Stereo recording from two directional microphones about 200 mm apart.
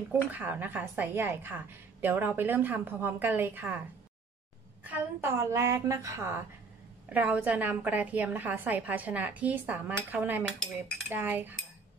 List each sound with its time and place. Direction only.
0.3 s a woman's voice: 10° right (ahead or behind)
4.8 s a woman's voice: 10° right (ahead or behind)